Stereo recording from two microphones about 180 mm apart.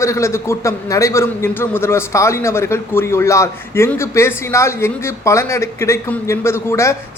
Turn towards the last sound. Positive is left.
turn(degrees=15)  # may be behind; listen again after turning